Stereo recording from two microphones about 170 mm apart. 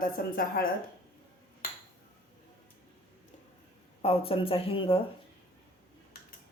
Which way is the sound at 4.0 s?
35° left (ahead or behind).